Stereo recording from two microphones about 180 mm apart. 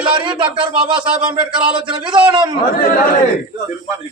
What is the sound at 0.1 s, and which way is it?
Speech, 25° right (ahead or behind).